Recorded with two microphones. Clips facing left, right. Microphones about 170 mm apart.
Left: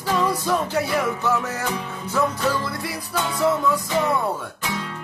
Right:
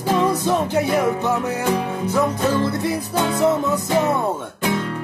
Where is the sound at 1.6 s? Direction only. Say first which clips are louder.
Right 7 dB; 55° right (ahead or behind).